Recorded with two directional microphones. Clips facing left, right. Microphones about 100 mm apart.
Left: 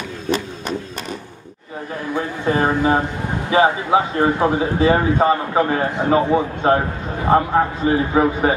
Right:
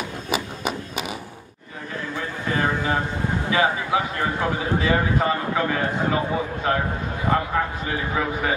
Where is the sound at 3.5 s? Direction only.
25° left (ahead or behind).